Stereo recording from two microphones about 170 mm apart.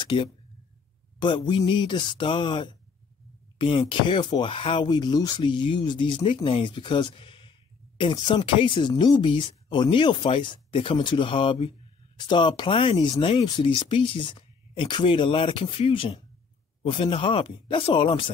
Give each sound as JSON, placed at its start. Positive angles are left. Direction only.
{"t": 0.0, "sound": "speech", "side_deg": 25}